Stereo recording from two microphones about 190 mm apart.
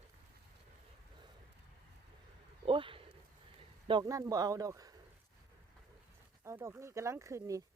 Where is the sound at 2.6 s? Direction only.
25° right (ahead or behind).